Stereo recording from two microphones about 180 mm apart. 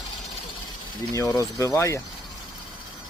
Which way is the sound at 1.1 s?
20° left (ahead or behind).